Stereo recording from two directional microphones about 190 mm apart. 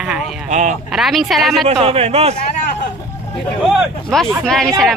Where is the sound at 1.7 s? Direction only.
30° right (ahead or behind).